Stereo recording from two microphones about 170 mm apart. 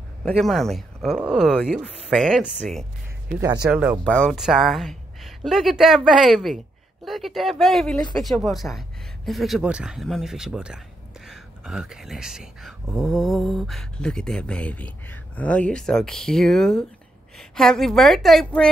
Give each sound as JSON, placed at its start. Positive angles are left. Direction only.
{"t": 0.2, "sound": "speech", "side_deg": 0}
{"t": 3.3, "sound": "speech", "side_deg": -15}
{"t": 4.1, "sound": "speech", "side_deg": 5}